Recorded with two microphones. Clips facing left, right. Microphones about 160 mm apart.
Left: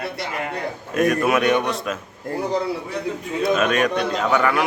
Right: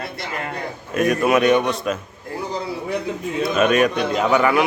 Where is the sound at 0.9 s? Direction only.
Centre (ahead or behind).